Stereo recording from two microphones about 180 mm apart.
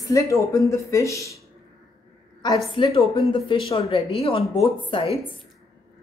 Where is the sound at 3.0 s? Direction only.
30° left (ahead or behind).